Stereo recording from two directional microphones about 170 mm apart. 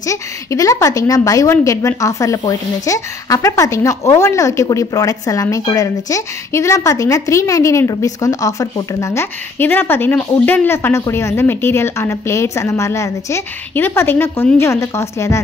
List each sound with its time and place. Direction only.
0.0 s a woman's voice: 20° left (ahead or behind)